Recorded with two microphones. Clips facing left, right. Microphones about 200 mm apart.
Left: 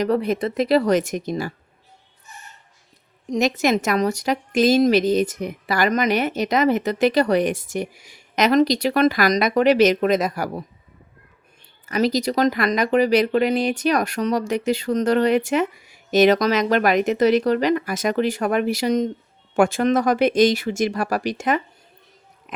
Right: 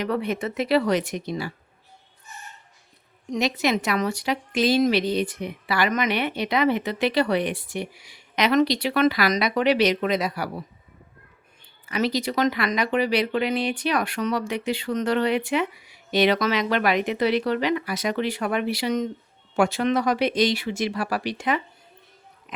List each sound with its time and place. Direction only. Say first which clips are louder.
0.0 s speech: left 5 dB; 40° left (ahead or behind)
3.2 s a woman's voice: left 4 dB; 45° left (ahead or behind)
11.9 s a woman's voice: left 4 dB; 40° left (ahead or behind)
19.5 s a woman's voice: left 4 dB; 50° left (ahead or behind)